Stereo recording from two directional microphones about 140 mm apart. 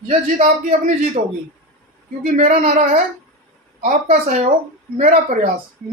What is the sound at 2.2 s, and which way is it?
Speech, 60° right (ahead or behind).